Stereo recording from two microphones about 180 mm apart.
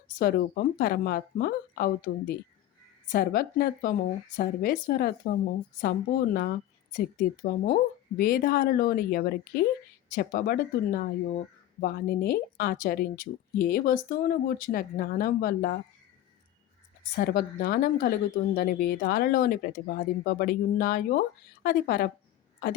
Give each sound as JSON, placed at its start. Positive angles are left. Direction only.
{"t": 0.2, "sound": "a woman's voice", "side_deg": 55}
{"t": 17.2, "sound": "speech", "side_deg": 60}